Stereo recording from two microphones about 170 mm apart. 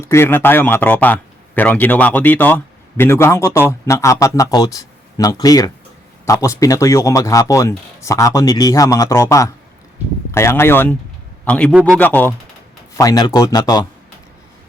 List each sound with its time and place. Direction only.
0.1 s a man's voice: 15° left (ahead or behind)
11.7 s a man's voice: 5° right (ahead or behind)
11.9 s speech: 10° left (ahead or behind)
13.0 s speech: 20° left (ahead or behind)